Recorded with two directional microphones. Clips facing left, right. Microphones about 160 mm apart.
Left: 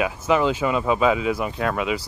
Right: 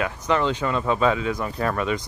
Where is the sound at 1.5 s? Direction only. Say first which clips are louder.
Even; centre (ahead or behind).